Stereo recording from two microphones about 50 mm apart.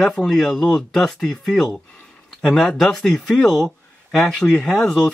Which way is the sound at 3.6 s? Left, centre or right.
Centre.